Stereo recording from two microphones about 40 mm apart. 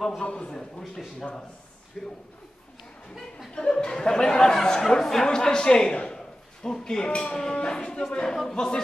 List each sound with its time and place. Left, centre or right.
0.2 s livestock: left
0.5 s speech: centre
3.5 s livestock: left
3.9 s speech: centre
7.1 s livestock: left
8.5 s speech: centre